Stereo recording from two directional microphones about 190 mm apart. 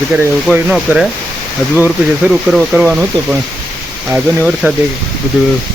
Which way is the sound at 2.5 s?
5° right (ahead or behind).